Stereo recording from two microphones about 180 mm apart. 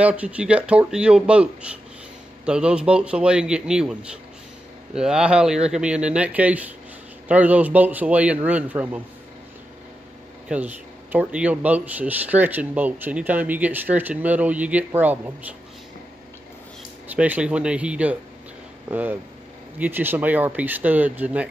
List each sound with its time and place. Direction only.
0.0 s a man's voice: 10° right (ahead or behind)
10.5 s speech: 10° right (ahead or behind)
17.1 s speech: 10° right (ahead or behind)